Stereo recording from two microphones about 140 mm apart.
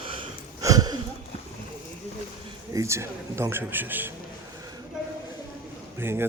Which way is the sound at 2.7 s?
20° right (ahead or behind).